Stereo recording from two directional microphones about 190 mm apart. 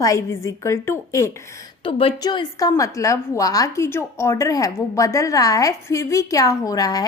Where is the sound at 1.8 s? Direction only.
30° left (ahead or behind).